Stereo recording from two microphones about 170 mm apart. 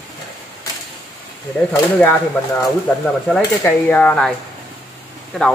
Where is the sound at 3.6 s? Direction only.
10° left (ahead or behind).